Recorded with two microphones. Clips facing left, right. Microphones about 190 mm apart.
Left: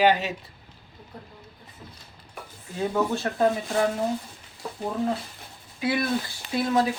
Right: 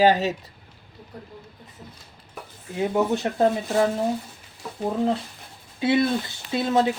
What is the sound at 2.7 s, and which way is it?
Speech, 20° right (ahead or behind).